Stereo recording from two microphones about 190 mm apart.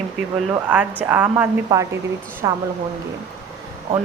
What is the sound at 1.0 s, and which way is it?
A woman's voice, 10° right (ahead or behind).